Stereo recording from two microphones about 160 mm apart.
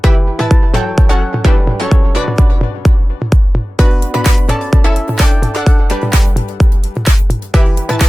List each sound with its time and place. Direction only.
0.0 s music: centre (ahead or behind)